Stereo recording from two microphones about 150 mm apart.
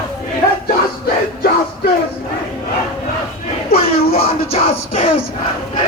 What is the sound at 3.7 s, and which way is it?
Music, 40° left (ahead or behind).